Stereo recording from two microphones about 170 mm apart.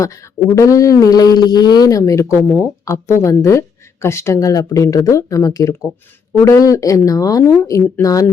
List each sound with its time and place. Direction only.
0.0 s speech: 20° left (ahead or behind)